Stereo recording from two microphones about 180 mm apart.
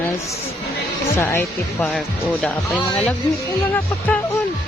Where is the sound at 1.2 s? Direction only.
15° left (ahead or behind).